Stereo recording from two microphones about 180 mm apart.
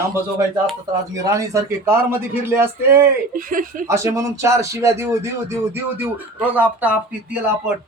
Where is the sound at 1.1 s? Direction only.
15° right (ahead or behind).